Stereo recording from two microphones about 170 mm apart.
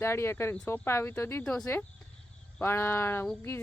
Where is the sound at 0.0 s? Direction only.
15° left (ahead or behind).